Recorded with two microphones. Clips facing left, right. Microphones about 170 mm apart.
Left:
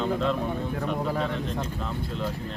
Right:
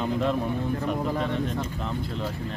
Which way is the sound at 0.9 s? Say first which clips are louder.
Right 1 dB; 5° right (ahead or behind).